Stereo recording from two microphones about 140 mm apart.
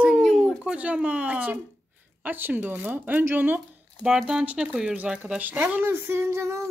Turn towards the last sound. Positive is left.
turn(degrees=-20)  # may be behind; listen again after turning